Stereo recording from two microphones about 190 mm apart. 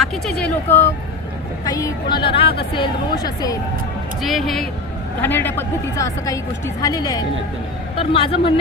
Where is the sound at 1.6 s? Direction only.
20° left (ahead or behind).